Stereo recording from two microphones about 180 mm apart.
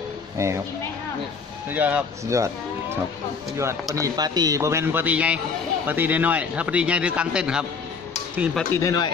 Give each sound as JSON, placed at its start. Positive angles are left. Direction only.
{"t": 0.4, "sound": "a man's voice", "side_deg": -15}
{"t": 1.7, "sound": "a man's voice", "side_deg": -10}
{"t": 8.7, "sound": "speech", "side_deg": 20}